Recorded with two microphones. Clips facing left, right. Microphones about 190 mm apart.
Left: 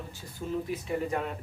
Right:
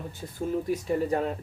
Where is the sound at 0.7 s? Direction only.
35° right (ahead or behind).